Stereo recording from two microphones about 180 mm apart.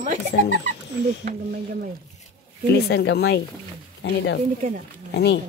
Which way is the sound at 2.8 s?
65° left (ahead or behind).